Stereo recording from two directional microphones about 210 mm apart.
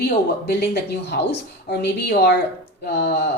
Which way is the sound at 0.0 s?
50° left (ahead or behind).